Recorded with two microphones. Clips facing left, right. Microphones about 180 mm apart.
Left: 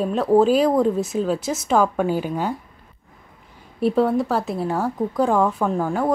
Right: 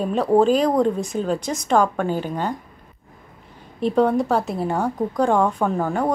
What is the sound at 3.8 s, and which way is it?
A woman's voice, 5° left (ahead or behind).